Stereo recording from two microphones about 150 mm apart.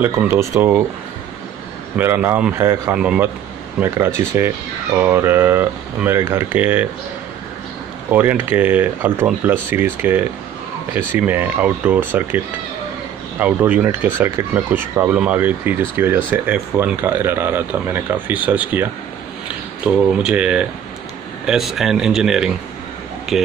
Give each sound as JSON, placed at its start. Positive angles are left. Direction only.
{"t": 0.0, "sound": "speech", "side_deg": -15}
{"t": 2.0, "sound": "speech", "side_deg": -15}
{"t": 8.1, "sound": "speech", "side_deg": -10}
{"t": 13.4, "sound": "speech", "side_deg": -15}